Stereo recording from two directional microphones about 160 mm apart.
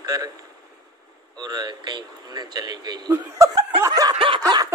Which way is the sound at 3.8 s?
25° right (ahead or behind).